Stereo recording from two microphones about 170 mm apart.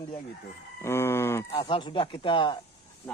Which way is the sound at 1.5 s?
30° left (ahead or behind).